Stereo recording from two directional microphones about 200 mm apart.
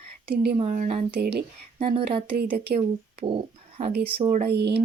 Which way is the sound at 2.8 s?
25° right (ahead or behind).